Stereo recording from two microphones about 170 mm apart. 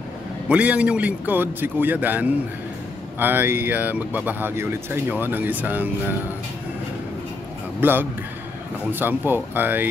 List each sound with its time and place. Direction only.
0.5 s speech: 5° right (ahead or behind)
7.8 s speech: 10° right (ahead or behind)